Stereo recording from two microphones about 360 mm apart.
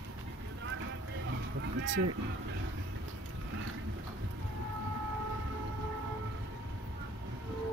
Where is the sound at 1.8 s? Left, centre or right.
Right.